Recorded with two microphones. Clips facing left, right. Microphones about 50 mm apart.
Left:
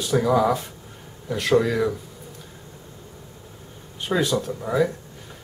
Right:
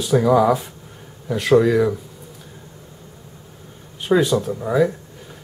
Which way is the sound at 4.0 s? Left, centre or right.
Centre.